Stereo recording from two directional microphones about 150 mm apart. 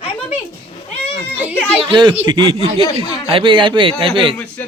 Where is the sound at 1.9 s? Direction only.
30° right (ahead or behind).